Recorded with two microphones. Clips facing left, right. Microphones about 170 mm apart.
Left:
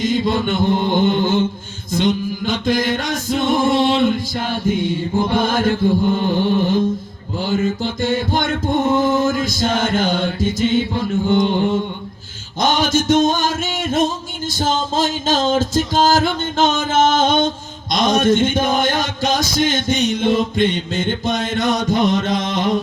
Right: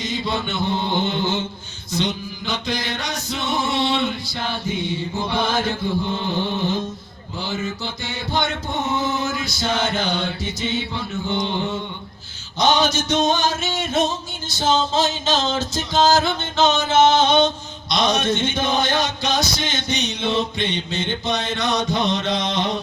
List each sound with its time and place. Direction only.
0.0 s music: 50° left (ahead or behind)
7.3 s music: 50° left (ahead or behind)